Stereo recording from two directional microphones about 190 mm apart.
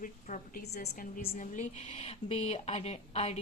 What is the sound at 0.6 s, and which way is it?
A woman's voice, 55° left (ahead or behind).